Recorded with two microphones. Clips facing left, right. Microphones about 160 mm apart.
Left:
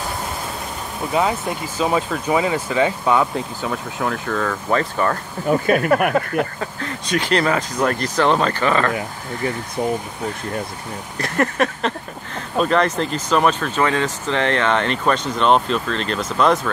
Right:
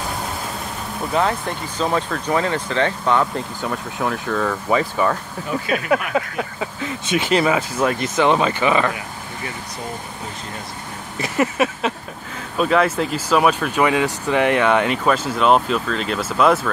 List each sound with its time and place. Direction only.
1.1 s speech: 5° left (ahead or behind)
5.5 s speech: 50° left (ahead or behind)
6.1 s speech: 5° right (ahead or behind)
11.1 s speech: 5° right (ahead or behind)